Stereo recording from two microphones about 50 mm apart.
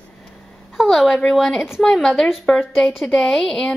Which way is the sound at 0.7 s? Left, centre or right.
Centre.